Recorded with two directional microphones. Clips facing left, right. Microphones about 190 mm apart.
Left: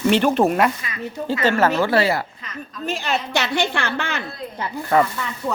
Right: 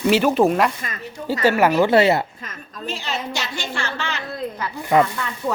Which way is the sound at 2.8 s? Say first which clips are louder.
Left 3 dB; 50° left (ahead or behind).